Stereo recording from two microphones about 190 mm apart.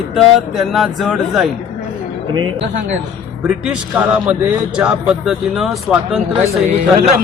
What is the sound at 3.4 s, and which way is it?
Speech, 5° right (ahead or behind).